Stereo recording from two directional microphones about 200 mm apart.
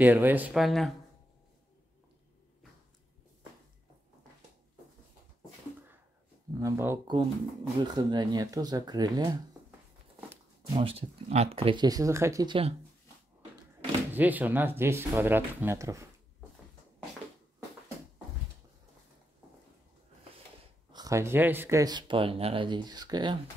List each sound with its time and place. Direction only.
0.0 s speech: 10° right (ahead or behind)
6.6 s speech: 15° right (ahead or behind)
10.7 s speech: 25° right (ahead or behind)
14.1 s speech: 10° right (ahead or behind)
20.9 s speech: 15° right (ahead or behind)